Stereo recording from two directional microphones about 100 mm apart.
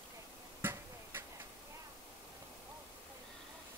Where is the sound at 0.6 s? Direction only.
20° right (ahead or behind).